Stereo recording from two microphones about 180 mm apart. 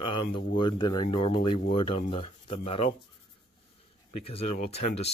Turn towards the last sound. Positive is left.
turn(degrees=35)  # may be behind; listen again after turning